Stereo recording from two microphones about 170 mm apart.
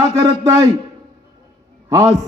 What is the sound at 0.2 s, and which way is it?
Speech, 20° right (ahead or behind).